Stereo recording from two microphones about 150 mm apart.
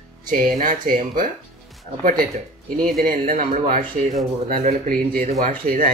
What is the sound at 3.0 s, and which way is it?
Speech, 65° right (ahead or behind).